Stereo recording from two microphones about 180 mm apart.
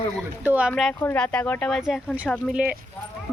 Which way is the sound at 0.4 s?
10° right (ahead or behind).